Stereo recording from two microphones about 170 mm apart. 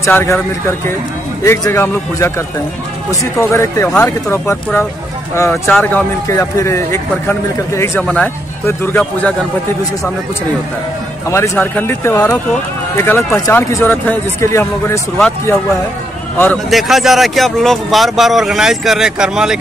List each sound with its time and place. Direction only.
0.0 s a man's voice: 15° left (ahead or behind)
8.0 s a man's voice: 5° left (ahead or behind)
11.2 s a man's voice: 15° left (ahead or behind)
16.7 s speech: centre (ahead or behind)